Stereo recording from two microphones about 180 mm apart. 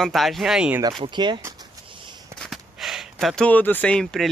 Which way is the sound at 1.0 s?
25° right (ahead or behind).